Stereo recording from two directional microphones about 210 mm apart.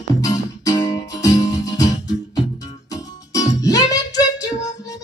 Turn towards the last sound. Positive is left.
turn(degrees=15)  # may be behind; listen again after turning